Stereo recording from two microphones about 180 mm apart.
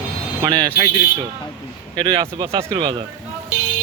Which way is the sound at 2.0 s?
25° right (ahead or behind).